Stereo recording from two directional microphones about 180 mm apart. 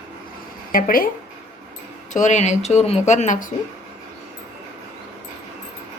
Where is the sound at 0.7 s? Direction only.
50° left (ahead or behind).